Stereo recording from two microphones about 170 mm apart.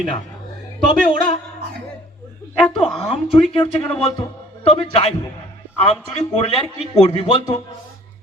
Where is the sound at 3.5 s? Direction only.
35° left (ahead or behind).